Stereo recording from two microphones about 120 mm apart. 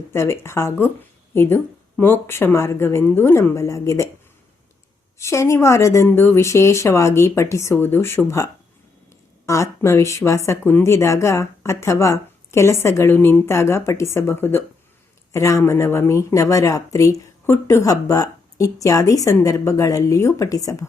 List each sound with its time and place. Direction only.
0.1 s speech: 20° left (ahead or behind)
5.2 s speech: 25° left (ahead or behind)
9.5 s speech: 25° left (ahead or behind)